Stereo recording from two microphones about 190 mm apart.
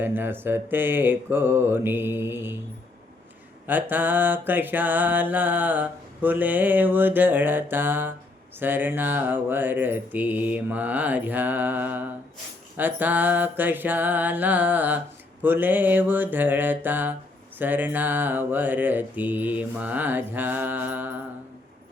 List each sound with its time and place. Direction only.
0.0 s music: 10° right (ahead or behind)
3.7 s music: 10° right (ahead or behind)